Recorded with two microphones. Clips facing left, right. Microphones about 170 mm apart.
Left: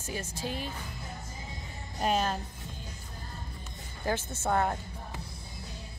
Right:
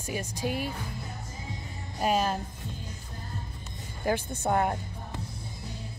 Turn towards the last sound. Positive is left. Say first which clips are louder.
# right 2 dB
turn(degrees=-15)  # may be behind; listen again after turning